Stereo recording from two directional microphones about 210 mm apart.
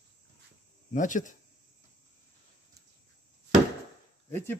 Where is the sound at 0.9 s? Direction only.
35° left (ahead or behind).